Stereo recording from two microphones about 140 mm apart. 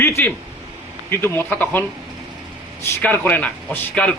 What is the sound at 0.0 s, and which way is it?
A man's voice, 15° left (ahead or behind).